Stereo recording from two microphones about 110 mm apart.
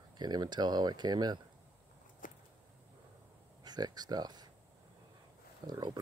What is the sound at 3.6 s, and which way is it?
Speech, 40° right (ahead or behind).